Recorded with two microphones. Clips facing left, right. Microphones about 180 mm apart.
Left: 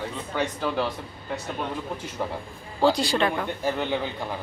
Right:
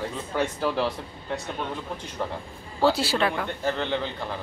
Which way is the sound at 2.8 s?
5° right (ahead or behind).